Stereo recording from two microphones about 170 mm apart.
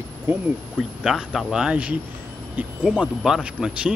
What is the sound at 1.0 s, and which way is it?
Speech, centre (ahead or behind).